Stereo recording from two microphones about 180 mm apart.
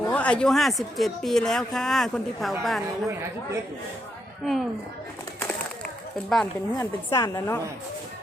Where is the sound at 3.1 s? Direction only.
15° right (ahead or behind).